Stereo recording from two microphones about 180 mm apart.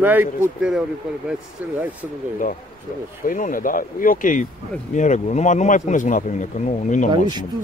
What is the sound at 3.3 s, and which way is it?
Speech, 50° left (ahead or behind).